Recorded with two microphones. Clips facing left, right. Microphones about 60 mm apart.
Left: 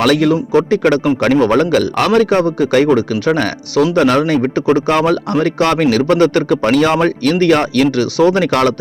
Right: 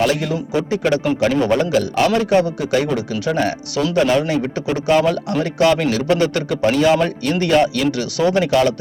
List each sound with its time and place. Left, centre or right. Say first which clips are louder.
0.0 s a man's voice: left 6 dB; left
2.4 s speech: left 6 dB; left